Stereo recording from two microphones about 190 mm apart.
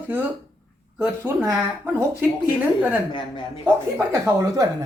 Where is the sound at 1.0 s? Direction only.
10° right (ahead or behind).